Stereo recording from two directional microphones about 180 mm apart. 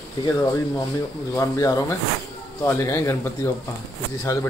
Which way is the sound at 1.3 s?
15° left (ahead or behind).